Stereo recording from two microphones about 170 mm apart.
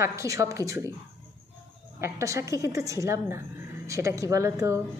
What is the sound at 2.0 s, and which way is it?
A woman's voice, 15° right (ahead or behind).